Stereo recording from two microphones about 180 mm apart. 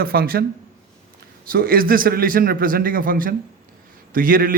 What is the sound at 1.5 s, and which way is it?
A man's voice, 55° right (ahead or behind).